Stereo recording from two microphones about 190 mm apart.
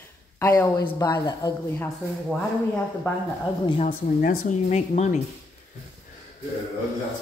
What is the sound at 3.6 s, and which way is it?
Speech, 30° left (ahead or behind).